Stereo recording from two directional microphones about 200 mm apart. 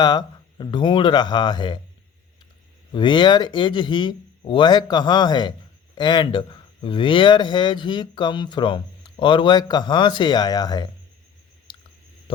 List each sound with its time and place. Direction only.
0.0 s speech: 20° left (ahead or behind)
2.9 s speech: 25° left (ahead or behind)
11.7 s a sound: 25° left (ahead or behind)